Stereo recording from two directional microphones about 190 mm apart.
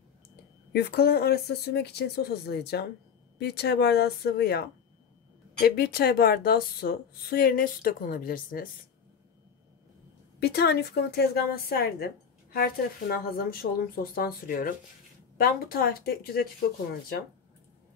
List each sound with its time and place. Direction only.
0.7 s a woman's voice: 55° left (ahead or behind)
10.4 s a woman's voice: 55° left (ahead or behind)